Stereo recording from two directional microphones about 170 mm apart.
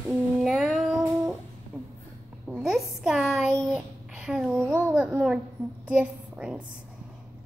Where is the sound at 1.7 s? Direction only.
5° right (ahead or behind).